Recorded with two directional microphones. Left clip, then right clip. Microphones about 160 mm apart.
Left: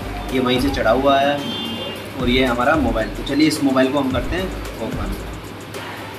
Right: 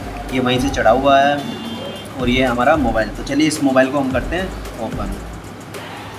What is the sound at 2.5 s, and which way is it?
Speech, 20° right (ahead or behind).